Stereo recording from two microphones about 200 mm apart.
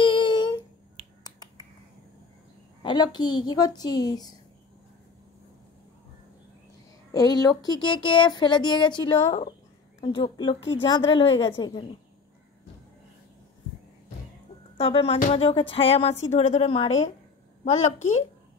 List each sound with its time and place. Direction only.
0.0 s humming: 25° left (ahead or behind)
1.2 s finger snapping: 20° left (ahead or behind)
2.8 s speech: 20° left (ahead or behind)
7.1 s speech: 20° left (ahead or behind)
14.8 s a woman's voice: 30° left (ahead or behind)